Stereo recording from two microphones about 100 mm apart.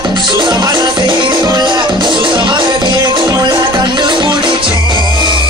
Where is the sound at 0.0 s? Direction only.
50° right (ahead or behind).